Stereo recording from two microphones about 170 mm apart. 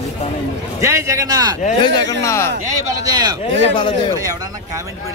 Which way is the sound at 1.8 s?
25° left (ahead or behind).